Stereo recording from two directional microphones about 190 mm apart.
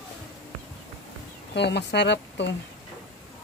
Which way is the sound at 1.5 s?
65° left (ahead or behind).